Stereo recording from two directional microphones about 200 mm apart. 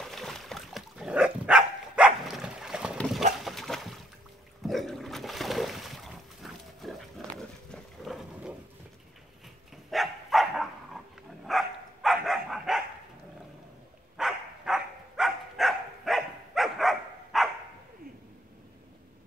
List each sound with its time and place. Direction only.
0.0 s dog: centre (ahead or behind)
3.3 s boat: centre (ahead or behind)
4.6 s a sound: centre (ahead or behind)
9.8 s dog: centre (ahead or behind)
14.1 s dog: centre (ahead or behind)